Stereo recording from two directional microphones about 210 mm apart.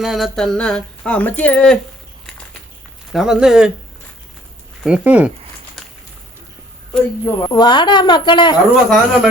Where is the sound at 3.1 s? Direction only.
Centre (ahead or behind).